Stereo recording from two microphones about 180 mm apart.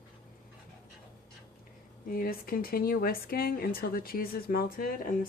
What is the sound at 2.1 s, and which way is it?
Speech, 55° left (ahead or behind).